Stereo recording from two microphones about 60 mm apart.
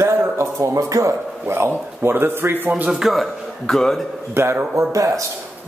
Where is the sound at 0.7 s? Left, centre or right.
Right.